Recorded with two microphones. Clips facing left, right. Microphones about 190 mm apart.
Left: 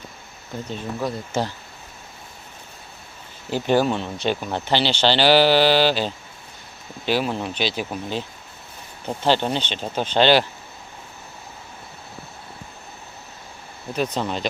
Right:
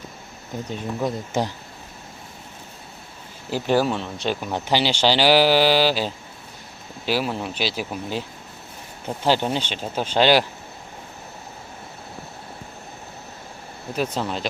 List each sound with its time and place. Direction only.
0.7 s speech: 15° right (ahead or behind)
3.5 s speech: 5° right (ahead or behind)
9.2 s speech: 10° right (ahead or behind)
13.9 s speech: 5° right (ahead or behind)